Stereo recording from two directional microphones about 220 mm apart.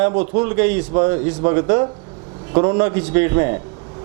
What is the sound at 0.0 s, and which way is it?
A man's voice, 30° right (ahead or behind).